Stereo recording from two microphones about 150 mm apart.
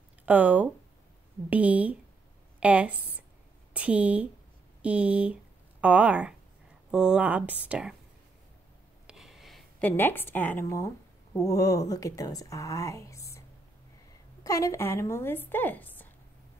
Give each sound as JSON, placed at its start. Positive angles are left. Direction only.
{"t": 0.2, "sound": "a woman's voice", "side_deg": -10}
{"t": 9.0, "sound": "a sound", "side_deg": 0}
{"t": 9.8, "sound": "a woman's voice", "side_deg": 15}
{"t": 14.4, "sound": "a woman's voice", "side_deg": 20}